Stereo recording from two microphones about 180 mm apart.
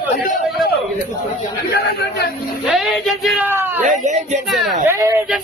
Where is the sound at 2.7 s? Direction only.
Centre (ahead or behind).